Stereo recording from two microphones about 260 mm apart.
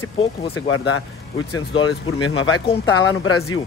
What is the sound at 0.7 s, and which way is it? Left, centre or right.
Speech, left.